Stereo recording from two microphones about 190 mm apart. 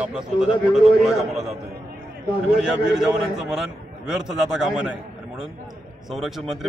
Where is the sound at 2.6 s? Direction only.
Centre (ahead or behind).